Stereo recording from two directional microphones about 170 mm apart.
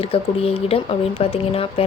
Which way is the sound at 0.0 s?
35° left (ahead or behind).